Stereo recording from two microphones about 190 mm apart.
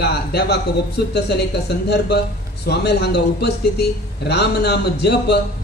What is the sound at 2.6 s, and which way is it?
A man's voice, 60° left (ahead or behind).